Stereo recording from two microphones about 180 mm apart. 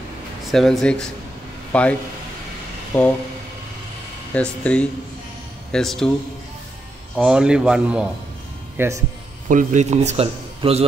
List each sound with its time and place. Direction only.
0.5 s speech: centre (ahead or behind)
4.3 s speech: 5° left (ahead or behind)
7.2 s speech: 5° right (ahead or behind)
8.7 s speech: 15° right (ahead or behind)
9.5 s a man's voice: 45° right (ahead or behind)